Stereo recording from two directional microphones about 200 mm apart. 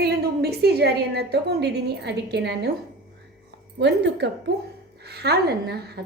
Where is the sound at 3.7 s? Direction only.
60° right (ahead or behind).